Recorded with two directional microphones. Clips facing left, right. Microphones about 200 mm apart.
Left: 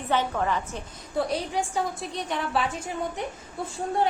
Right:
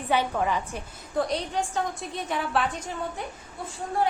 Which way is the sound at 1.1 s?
5° left (ahead or behind).